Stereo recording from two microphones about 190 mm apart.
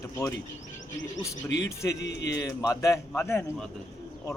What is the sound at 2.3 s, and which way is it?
A man's voice, 15° left (ahead or behind).